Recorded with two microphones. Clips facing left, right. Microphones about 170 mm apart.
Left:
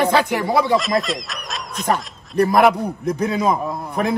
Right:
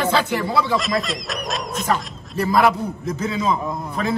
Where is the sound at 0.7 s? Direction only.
Centre (ahead or behind).